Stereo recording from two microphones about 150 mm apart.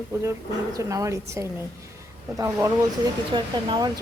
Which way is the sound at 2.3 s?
25° right (ahead or behind).